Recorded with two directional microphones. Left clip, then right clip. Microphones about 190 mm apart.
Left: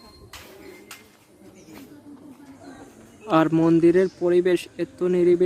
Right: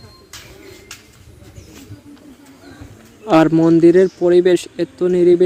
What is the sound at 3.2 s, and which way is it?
Speech, 20° right (ahead or behind).